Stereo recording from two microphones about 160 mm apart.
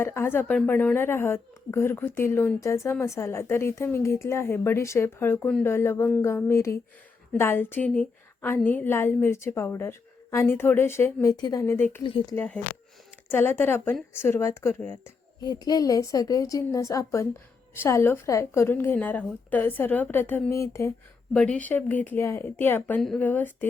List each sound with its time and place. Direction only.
0.0 s a woman's voice: 15° left (ahead or behind)
12.0 s speech: 30° left (ahead or behind)
12.3 s a woman's voice: 10° left (ahead or behind)
15.4 s a woman's voice: 25° left (ahead or behind)
21.3 s a woman's voice: 5° left (ahead or behind)